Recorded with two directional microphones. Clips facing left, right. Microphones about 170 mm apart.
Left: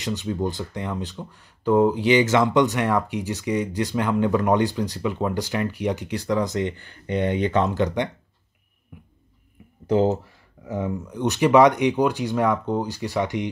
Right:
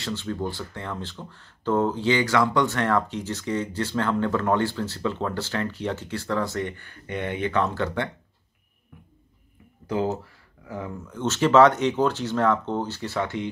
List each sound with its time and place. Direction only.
0.0 s speech: 15° left (ahead or behind)
8.9 s a sound: 15° left (ahead or behind)
9.8 s speech: 25° left (ahead or behind)